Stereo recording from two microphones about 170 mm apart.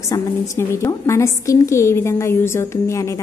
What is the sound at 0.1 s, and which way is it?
A woman's voice, 15° left (ahead or behind).